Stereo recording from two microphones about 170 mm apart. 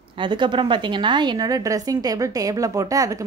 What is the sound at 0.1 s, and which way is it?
A woman's voice, 30° right (ahead or behind).